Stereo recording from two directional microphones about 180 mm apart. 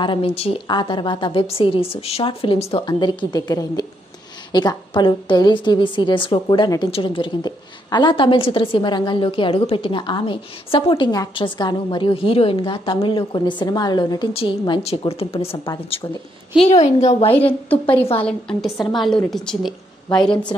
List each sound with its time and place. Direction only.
0.0 s a woman's voice: 30° left (ahead or behind)
16.6 s a woman's voice: 40° left (ahead or behind)
18.2 s a woman's voice: 5° left (ahead or behind)